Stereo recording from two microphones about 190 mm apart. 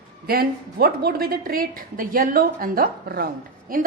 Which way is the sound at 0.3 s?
50° right (ahead or behind).